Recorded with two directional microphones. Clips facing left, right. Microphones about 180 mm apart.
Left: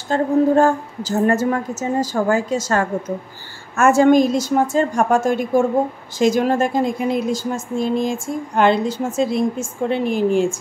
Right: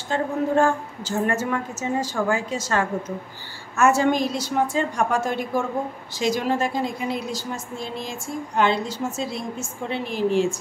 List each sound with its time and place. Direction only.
0.1 s a woman's voice: 40° left (ahead or behind)